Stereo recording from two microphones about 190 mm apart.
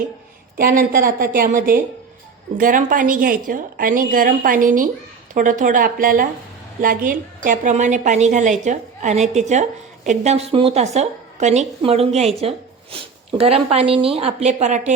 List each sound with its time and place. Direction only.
0.5 s a woman's voice: 45° right (ahead or behind)